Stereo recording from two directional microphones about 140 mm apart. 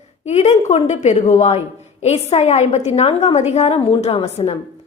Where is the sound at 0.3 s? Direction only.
50° left (ahead or behind).